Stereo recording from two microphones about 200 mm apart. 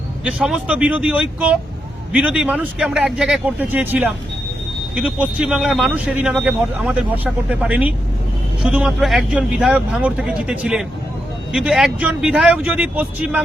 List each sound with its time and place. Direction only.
0.3 s speech: 5° right (ahead or behind)